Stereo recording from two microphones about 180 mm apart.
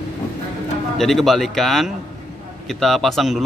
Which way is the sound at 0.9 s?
Centre (ahead or behind).